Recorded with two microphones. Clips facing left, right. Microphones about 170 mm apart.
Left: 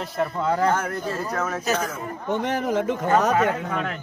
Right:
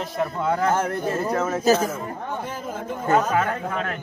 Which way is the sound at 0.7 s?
25° right (ahead or behind).